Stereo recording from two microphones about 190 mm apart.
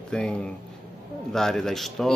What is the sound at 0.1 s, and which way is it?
A man's voice, 5° left (ahead or behind).